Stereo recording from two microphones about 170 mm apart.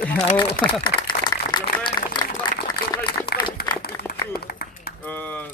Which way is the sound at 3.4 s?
25° left (ahead or behind).